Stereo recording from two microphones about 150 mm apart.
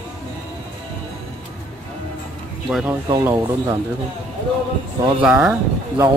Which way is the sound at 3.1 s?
25° right (ahead or behind).